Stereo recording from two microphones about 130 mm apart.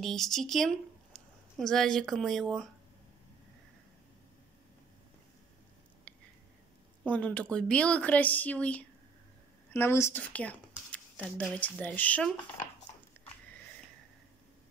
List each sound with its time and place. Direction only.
0.0 s speech: 5° left (ahead or behind)
7.1 s a woman's voice: 10° left (ahead or behind)
10.9 s a sound: 10° left (ahead or behind)
11.4 s speech: 10° left (ahead or behind)